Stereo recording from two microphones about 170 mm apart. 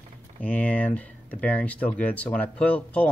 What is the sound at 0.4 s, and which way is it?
Speech, 10° left (ahead or behind).